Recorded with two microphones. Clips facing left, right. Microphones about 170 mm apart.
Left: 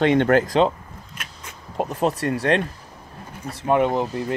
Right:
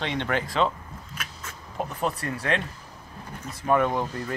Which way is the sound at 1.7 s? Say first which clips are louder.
Left 6 dB; 40° left (ahead or behind).